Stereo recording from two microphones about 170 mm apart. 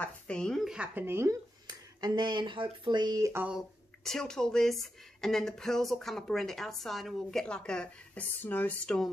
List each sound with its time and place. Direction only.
0.0 s speech: 5° left (ahead or behind); by 3.4 s 20° right (ahead or behind)
3.4 s speech: centre (ahead or behind)